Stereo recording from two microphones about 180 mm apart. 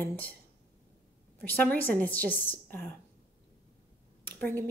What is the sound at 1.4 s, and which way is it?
Speech, 10° left (ahead or behind).